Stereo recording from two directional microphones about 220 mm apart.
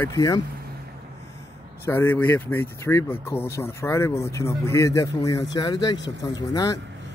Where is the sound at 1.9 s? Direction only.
10° left (ahead or behind).